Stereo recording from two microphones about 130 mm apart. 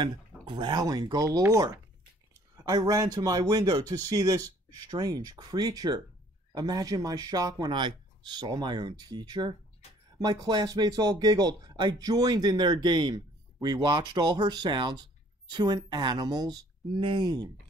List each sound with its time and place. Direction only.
0.0 s speech: 35° right (ahead or behind)